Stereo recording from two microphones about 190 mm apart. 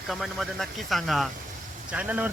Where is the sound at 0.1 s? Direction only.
Centre (ahead or behind).